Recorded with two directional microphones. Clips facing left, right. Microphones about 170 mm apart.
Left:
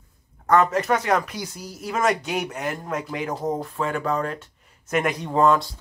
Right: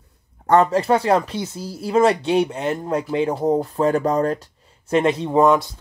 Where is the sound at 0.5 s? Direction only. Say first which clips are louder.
Right 4 dB; 30° right (ahead or behind).